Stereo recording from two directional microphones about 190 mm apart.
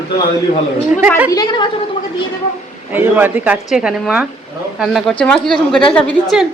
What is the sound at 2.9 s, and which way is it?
A man's voice, 10° right (ahead or behind).